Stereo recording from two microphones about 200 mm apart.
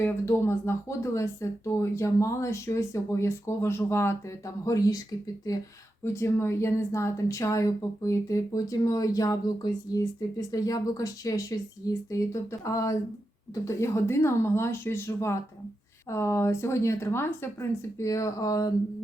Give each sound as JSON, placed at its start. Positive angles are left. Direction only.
{"t": 0.0, "sound": "speech", "side_deg": 10}
{"t": 6.1, "sound": "speech", "side_deg": 15}